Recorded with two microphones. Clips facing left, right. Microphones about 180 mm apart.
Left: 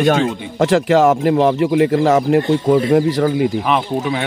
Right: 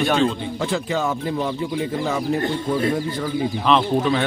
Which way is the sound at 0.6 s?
85° left.